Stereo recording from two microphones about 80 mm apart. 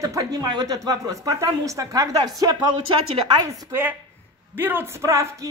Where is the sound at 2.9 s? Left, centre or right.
Right.